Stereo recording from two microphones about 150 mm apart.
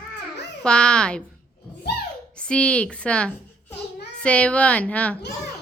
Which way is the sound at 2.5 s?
5° left (ahead or behind).